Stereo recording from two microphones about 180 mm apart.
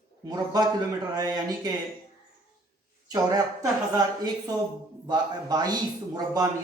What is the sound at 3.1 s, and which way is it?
Speech, 20° right (ahead or behind).